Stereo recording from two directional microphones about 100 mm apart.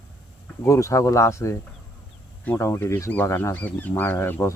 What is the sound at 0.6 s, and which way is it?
Speech, 30° left (ahead or behind).